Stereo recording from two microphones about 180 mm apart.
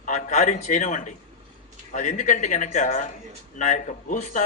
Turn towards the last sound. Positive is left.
turn(degrees=40)  # may be behind; listen again after turning